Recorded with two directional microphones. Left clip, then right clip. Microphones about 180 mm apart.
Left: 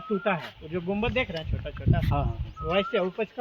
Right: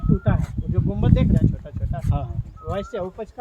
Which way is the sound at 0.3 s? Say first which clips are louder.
Left 1 dB; 25° left (ahead or behind).